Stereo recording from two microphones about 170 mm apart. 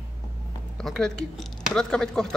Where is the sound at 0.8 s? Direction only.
5° left (ahead or behind).